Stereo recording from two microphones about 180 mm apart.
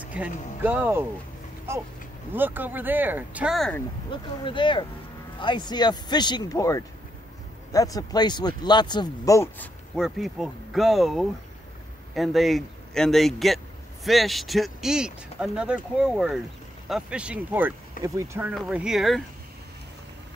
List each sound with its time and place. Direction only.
0.0 s speech: 10° right (ahead or behind)
2.3 s speech: 10° right (ahead or behind)
4.1 s speech: 25° left (ahead or behind)
9.9 s speech: centre (ahead or behind); by 18.5 s 15° right (ahead or behind)
18.5 s speech: 5° right (ahead or behind)